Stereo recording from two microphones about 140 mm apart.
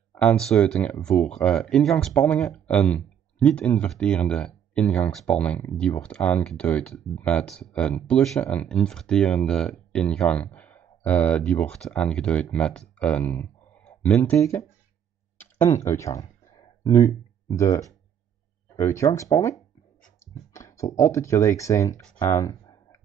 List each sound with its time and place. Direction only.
0.1 s speech: 10° left (ahead or behind)
20.5 s speech: 20° left (ahead or behind)
22.3 s a sound: 20° left (ahead or behind)